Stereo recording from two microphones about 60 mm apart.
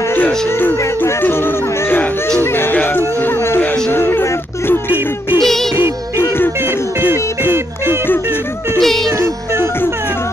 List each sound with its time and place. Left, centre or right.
0.6 s music: left
3.2 s a sound: left
5.4 s music: centre
7.0 s music: right
8.7 s music: centre